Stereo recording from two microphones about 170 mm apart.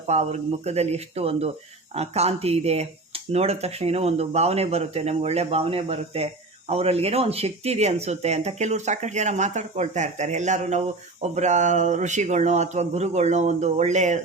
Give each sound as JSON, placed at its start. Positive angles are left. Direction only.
{"t": 0.1, "sound": "speech", "side_deg": -40}